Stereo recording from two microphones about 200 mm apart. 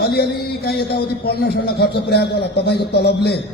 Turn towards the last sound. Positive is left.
turn(degrees=55)  # may be behind; listen again after turning